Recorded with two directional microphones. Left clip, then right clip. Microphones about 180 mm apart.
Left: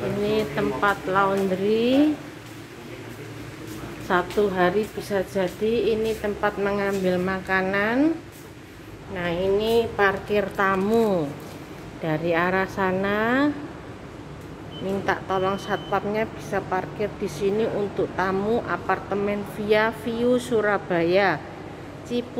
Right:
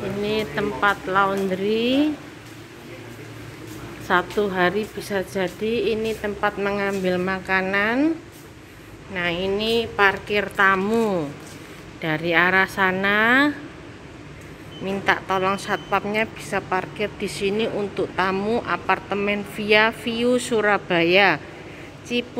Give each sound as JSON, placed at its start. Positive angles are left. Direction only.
{"t": 0.2, "sound": "a woman's voice", "side_deg": -10}
{"t": 4.1, "sound": "a woman's voice", "side_deg": -10}
{"t": 9.1, "sound": "a woman's voice", "side_deg": -10}
{"t": 14.9, "sound": "speech", "side_deg": -15}